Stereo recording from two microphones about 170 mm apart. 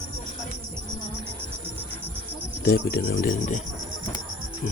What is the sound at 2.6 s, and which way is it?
Speech, 60° left (ahead or behind).